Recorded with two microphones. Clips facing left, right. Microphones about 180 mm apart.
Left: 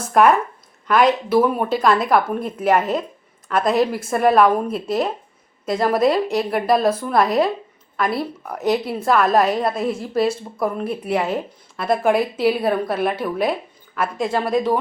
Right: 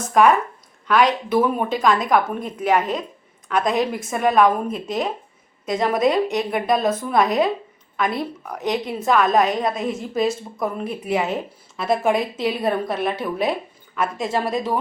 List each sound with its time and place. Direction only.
0.1 s a woman's voice: 5° left (ahead or behind)